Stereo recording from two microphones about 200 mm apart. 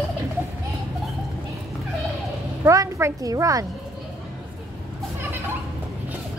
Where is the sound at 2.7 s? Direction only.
15° right (ahead or behind).